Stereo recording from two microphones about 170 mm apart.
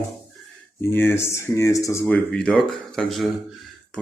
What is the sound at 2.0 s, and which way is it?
Speech, 5° left (ahead or behind).